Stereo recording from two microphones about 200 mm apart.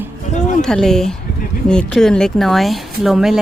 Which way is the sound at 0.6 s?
Centre (ahead or behind).